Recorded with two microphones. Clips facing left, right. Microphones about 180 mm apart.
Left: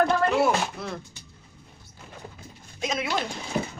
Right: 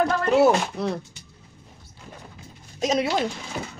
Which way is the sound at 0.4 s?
40° right (ahead or behind).